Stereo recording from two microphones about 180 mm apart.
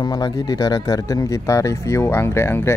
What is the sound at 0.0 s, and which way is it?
Speech, 20° left (ahead or behind).